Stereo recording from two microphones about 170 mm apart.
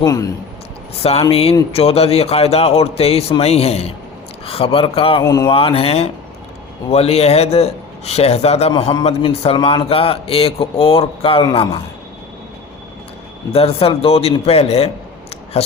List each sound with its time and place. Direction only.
0.0 s speech: 20° left (ahead or behind)
1.3 s a man's voice: 35° left (ahead or behind)
5.2 s speech: 20° left (ahead or behind)
5.5 s a man's voice: 35° left (ahead or behind)
13.5 s a man's voice: 35° left (ahead or behind)